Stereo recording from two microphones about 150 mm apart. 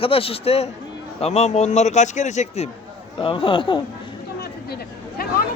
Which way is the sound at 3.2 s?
35° left (ahead or behind).